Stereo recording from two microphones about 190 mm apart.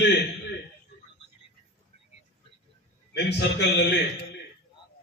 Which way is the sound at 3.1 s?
65° left (ahead or behind).